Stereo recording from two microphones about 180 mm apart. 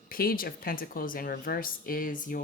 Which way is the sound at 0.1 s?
55° left (ahead or behind).